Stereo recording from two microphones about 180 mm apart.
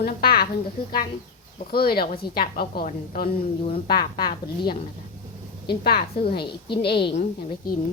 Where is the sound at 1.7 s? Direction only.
55° left (ahead or behind).